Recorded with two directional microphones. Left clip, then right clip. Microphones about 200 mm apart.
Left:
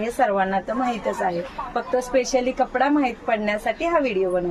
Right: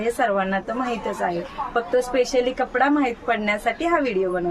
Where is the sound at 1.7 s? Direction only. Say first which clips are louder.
Even; 20° right (ahead or behind).